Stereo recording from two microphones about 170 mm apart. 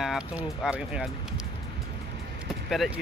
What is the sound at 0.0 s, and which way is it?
Speech, 5° right (ahead or behind).